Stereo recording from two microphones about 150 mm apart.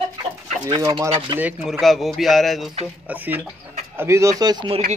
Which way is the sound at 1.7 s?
Centre (ahead or behind).